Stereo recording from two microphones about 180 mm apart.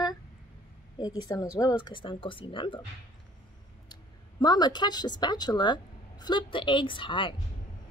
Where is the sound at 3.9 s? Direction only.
25° left (ahead or behind).